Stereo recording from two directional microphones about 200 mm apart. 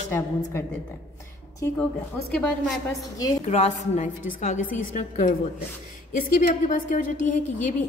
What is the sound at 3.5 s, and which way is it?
A woman's voice, 35° left (ahead or behind).